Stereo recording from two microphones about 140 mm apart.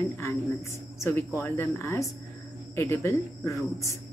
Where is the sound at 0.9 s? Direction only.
15° left (ahead or behind).